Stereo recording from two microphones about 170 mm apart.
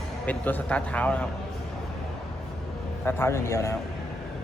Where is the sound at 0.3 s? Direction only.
10° left (ahead or behind).